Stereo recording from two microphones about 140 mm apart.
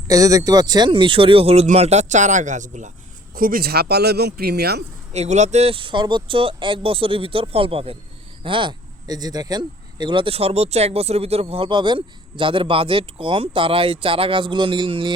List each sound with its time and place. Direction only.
0.1 s speech: 25° right (ahead or behind); by 2.9 s 60° right (ahead or behind)
3.3 s speech: 90° right
5.1 s speech: 55° right (ahead or behind); by 15.1 s 35° right (ahead or behind)